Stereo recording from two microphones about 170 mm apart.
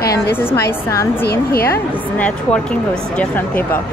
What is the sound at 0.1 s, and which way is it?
Speech, 15° left (ahead or behind).